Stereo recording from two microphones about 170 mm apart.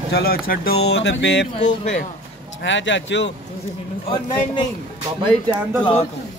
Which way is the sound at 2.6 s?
90° left.